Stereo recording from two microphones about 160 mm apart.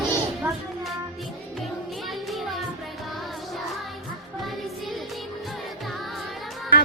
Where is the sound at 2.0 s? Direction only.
Centre (ahead or behind).